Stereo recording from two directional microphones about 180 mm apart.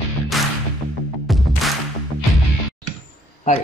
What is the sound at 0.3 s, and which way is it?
Music, centre (ahead or behind).